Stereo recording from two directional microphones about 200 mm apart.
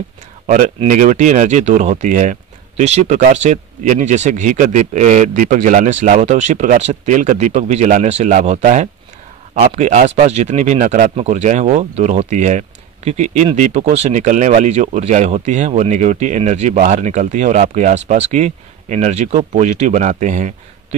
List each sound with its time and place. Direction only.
0.8 s speech: 40° right (ahead or behind)